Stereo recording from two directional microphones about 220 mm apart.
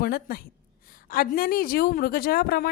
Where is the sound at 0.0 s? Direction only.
40° left (ahead or behind).